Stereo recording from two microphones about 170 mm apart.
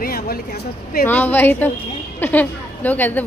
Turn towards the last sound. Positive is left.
turn(degrees=10)  # may be behind; listen again after turning